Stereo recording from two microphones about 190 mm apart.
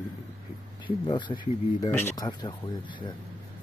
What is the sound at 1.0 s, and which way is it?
Speech, 25° left (ahead or behind).